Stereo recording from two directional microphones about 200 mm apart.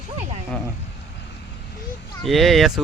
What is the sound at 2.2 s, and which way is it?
Speech, centre (ahead or behind).